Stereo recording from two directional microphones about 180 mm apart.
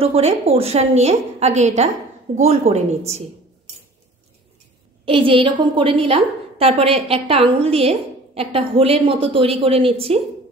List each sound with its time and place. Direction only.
0.0 s a woman's voice: 35° right (ahead or behind)
5.0 s a woman's voice: 30° right (ahead or behind)